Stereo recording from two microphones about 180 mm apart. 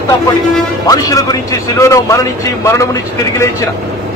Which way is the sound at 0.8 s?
20° left (ahead or behind).